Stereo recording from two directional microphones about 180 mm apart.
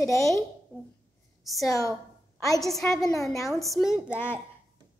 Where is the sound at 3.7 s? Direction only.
5° right (ahead or behind).